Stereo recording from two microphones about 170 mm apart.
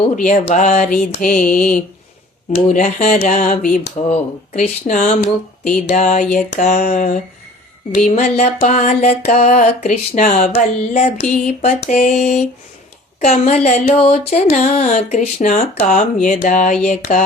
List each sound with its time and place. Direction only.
0.2 s speech: 45° left (ahead or behind)